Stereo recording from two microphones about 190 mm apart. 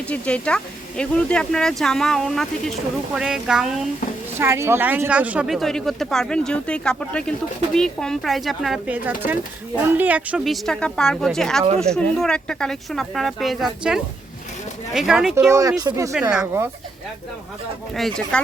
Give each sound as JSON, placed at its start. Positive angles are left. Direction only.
{"t": 0.1, "sound": "speech", "side_deg": 5}
{"t": 4.4, "sound": "speech", "side_deg": -15}
{"t": 15.4, "sound": "speech", "side_deg": -15}
{"t": 16.3, "sound": "speech", "side_deg": -5}
{"t": 17.9, "sound": "speech", "side_deg": 5}